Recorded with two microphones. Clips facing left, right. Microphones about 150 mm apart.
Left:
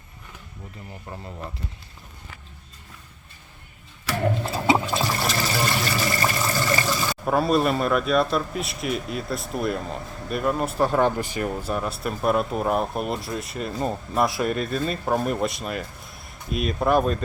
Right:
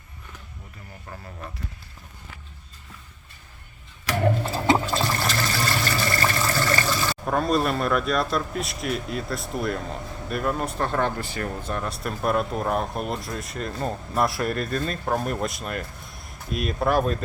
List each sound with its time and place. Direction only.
1.1 s speech: 20° left (ahead or behind)
4.0 s a sound: 5° left (ahead or behind)
5.9 s speech: 10° left (ahead or behind)